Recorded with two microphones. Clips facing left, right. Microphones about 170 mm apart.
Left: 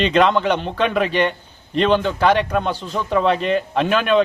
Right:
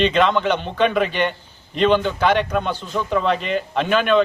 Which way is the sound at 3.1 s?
Centre (ahead or behind).